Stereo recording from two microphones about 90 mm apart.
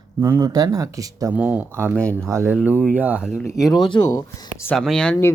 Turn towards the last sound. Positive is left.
turn(degrees=10)  # may be behind; listen again after turning